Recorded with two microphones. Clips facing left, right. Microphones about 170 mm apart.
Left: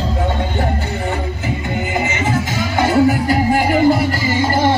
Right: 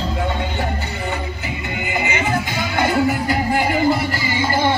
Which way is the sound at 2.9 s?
40° left (ahead or behind).